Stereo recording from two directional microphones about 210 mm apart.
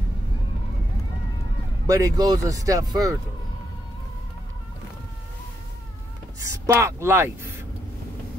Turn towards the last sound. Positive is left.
turn(degrees=-10)  # may be behind; listen again after turning